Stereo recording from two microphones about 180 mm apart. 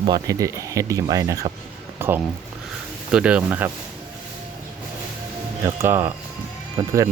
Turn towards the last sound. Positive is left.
turn(degrees=-20)  # may be behind; listen again after turning